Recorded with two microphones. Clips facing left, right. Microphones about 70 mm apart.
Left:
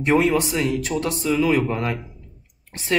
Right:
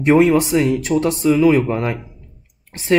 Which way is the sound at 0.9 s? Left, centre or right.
Right.